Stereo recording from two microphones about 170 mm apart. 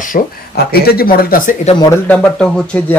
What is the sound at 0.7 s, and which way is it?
Speech, 65° left (ahead or behind).